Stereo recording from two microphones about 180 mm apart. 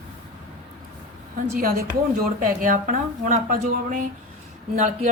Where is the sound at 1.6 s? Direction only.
55° right (ahead or behind).